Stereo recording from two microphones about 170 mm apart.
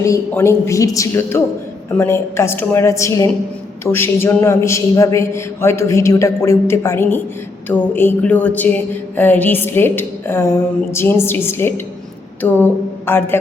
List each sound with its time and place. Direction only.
0.0 s a man's voice: 15° left (ahead or behind)